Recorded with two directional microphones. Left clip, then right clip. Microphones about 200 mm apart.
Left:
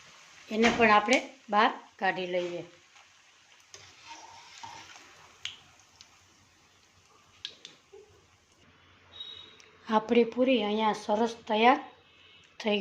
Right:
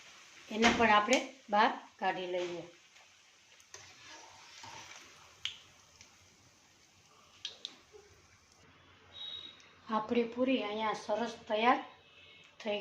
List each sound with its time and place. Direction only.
0.4 s speech: 40° left (ahead or behind)
9.8 s a woman's voice: 50° left (ahead or behind)